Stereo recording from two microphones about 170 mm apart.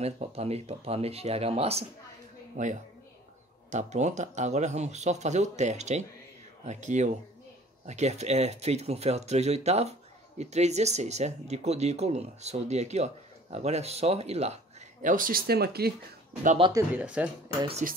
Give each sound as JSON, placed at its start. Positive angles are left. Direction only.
{"t": 0.0, "sound": "speech", "side_deg": -35}
{"t": 2.5, "sound": "speech", "side_deg": -45}
{"t": 16.9, "sound": "speech", "side_deg": -5}
{"t": 17.8, "sound": "speech", "side_deg": -50}